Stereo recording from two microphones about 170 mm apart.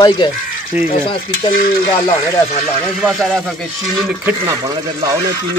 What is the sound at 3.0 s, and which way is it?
Speech, 5° right (ahead or behind).